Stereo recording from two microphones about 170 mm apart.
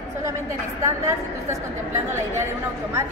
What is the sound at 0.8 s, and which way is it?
Speech, 20° right (ahead or behind).